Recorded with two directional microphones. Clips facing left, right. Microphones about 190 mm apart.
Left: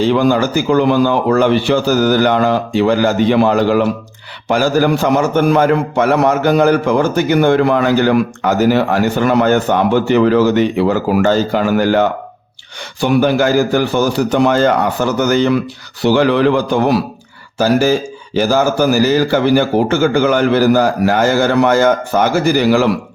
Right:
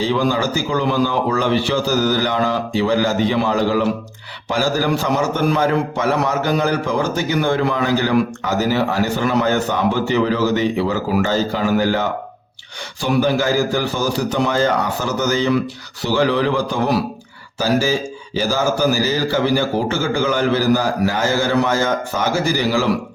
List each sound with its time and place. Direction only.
0.0 s a man's voice: 55° left (ahead or behind)
17.6 s a man's voice: 55° left (ahead or behind)